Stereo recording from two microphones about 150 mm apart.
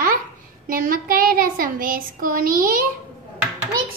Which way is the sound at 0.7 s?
70° right (ahead or behind).